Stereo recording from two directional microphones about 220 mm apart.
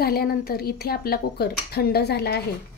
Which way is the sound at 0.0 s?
45° left (ahead or behind).